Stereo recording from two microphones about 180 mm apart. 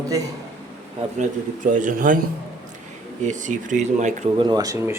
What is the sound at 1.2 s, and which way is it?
Speech, 45° right (ahead or behind).